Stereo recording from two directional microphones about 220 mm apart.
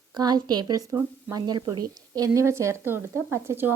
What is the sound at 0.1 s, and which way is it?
Speech, 20° right (ahead or behind).